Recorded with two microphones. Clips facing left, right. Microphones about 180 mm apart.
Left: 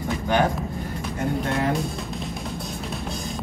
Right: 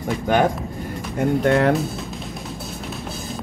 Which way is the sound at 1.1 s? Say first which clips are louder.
Right 8 dB; 65° right (ahead or behind).